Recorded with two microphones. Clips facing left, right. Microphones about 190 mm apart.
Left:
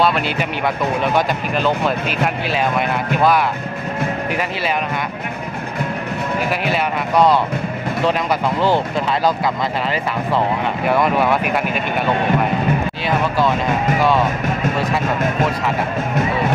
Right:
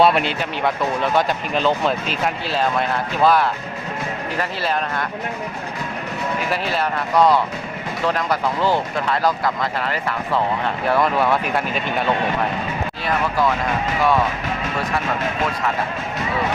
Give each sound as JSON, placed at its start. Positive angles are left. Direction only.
{"t": 0.0, "sound": "speech", "side_deg": 0}
{"t": 7.2, "sound": "speech", "side_deg": 25}
{"t": 11.0, "sound": "speech", "side_deg": 10}